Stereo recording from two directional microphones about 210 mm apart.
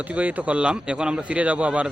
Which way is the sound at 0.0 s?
5° right (ahead or behind).